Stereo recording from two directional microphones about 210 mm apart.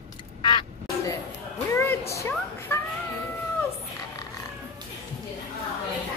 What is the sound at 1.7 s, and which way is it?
Music, 10° left (ahead or behind).